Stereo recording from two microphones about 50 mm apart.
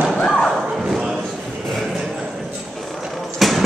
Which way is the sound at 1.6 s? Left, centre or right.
Centre.